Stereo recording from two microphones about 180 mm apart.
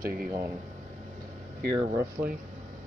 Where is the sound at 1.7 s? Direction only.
20° right (ahead or behind).